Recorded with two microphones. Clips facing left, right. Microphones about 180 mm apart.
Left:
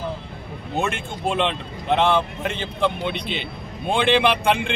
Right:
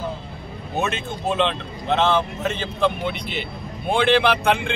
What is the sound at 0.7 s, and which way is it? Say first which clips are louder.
A man's voice: even; 15° left (ahead or behind).